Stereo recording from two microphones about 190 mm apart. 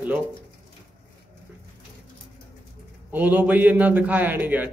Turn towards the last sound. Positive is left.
turn(degrees=-10)  # may be behind; listen again after turning